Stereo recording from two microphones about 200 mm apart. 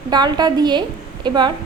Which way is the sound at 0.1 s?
20° right (ahead or behind).